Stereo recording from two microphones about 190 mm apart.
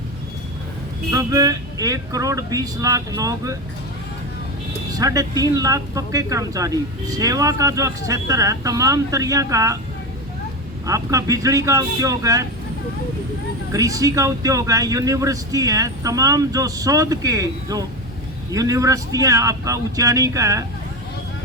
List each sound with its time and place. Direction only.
1.1 s a man's voice: 20° right (ahead or behind)
4.9 s a man's voice: 20° right (ahead or behind)
10.8 s a man's voice: 15° right (ahead or behind)
13.7 s a man's voice: 15° right (ahead or behind)